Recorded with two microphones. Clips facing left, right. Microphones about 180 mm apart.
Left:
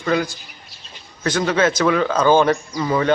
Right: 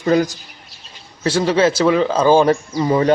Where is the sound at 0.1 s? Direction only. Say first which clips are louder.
Right 5 dB; 40° right (ahead or behind).